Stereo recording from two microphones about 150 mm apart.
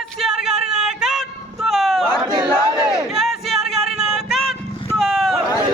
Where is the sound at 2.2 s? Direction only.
30° right (ahead or behind).